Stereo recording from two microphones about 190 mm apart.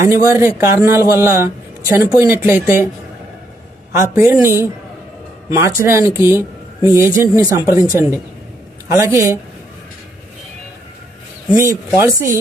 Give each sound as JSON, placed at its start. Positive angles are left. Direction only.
{"t": 0.0, "sound": "speech", "side_deg": -15}
{"t": 3.9, "sound": "a man's voice", "side_deg": -15}
{"t": 11.5, "sound": "speech", "side_deg": -15}